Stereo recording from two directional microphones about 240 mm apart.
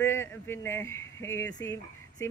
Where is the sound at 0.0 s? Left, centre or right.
Centre.